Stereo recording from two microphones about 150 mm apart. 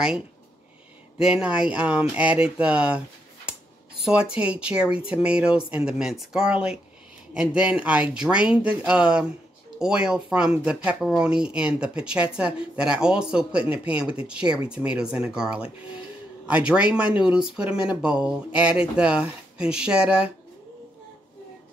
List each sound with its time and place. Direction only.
1.2 s speech: 5° right (ahead or behind)
4.0 s speech: 5° right (ahead or behind)